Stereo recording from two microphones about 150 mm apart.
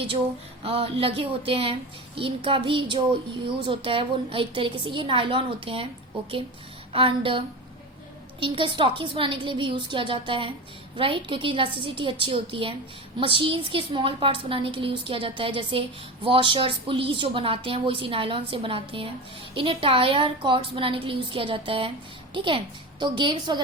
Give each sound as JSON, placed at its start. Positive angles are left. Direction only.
{"t": 0.6, "sound": "a woman's voice", "side_deg": -40}
{"t": 6.9, "sound": "a woman's voice", "side_deg": -35}